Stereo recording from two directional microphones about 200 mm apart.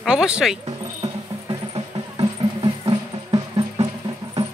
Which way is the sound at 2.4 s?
30° right (ahead or behind).